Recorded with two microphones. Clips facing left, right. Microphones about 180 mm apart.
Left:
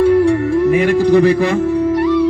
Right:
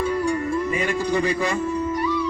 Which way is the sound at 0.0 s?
60° left (ahead or behind).